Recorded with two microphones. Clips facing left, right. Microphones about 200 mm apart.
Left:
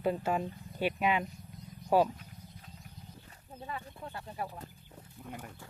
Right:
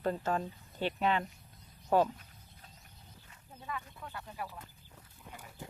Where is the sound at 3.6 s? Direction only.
30° left (ahead or behind).